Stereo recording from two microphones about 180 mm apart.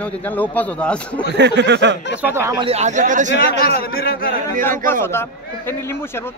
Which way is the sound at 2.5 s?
35° right (ahead or behind).